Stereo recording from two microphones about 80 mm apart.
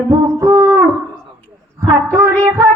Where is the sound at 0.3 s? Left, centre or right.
Right.